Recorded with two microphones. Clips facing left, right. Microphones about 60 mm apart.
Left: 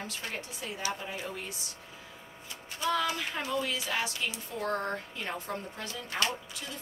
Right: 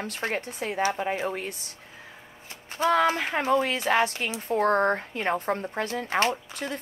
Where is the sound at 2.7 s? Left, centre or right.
Right.